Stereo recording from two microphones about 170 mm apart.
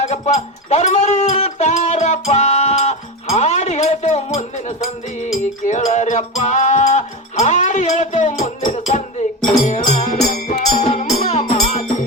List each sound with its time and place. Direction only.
0.0 s music: 40° left (ahead or behind)